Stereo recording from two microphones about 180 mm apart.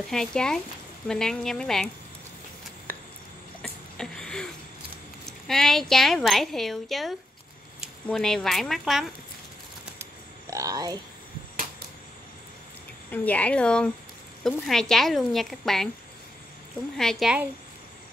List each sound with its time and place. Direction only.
0.1 s speech: 5° left (ahead or behind)
3.6 s a sound: 5° left (ahead or behind)
5.2 s speech: centre (ahead or behind)
9.9 s a sound: 15° right (ahead or behind)
13.1 s a woman's voice: 10° left (ahead or behind)
16.9 s speech: centre (ahead or behind)